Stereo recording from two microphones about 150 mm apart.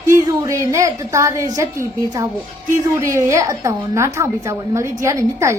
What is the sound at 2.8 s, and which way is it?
A woman's voice, 20° right (ahead or behind).